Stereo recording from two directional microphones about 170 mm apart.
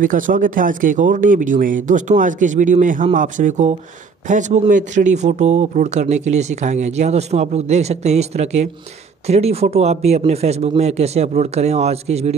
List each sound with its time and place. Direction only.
0.0 s speech: 50° right (ahead or behind)